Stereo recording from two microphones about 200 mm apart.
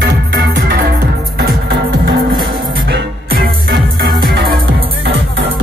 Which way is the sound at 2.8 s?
60° right (ahead or behind).